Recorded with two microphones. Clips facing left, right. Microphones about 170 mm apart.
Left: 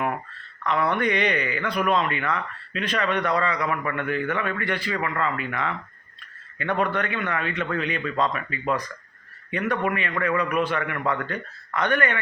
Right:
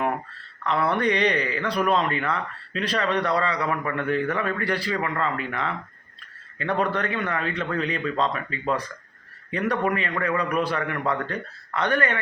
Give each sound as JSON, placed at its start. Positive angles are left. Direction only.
{"t": 0.6, "sound": "speech", "side_deg": -35}
{"t": 6.8, "sound": "speech", "side_deg": -35}